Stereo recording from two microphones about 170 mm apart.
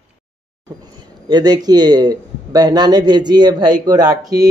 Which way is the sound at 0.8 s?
25° right (ahead or behind).